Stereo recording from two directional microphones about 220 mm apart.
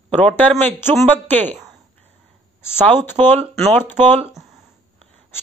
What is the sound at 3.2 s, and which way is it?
Speech, 25° right (ahead or behind).